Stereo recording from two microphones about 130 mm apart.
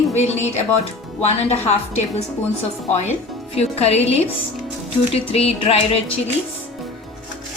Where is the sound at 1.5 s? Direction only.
55° left (ahead or behind).